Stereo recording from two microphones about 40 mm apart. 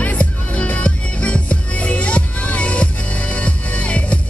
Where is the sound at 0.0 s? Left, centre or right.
Left.